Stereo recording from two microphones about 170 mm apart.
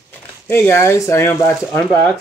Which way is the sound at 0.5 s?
15° left (ahead or behind).